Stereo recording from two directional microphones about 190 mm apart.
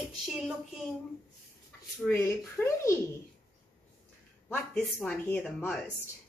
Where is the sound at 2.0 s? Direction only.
15° left (ahead or behind).